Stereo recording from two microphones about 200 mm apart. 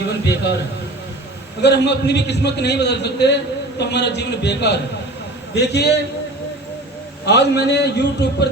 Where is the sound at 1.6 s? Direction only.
55° left (ahead or behind).